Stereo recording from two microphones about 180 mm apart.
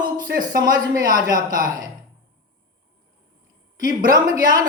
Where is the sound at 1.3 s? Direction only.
50° right (ahead or behind).